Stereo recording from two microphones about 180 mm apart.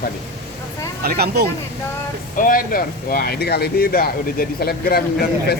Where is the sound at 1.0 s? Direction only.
60° right (ahead or behind).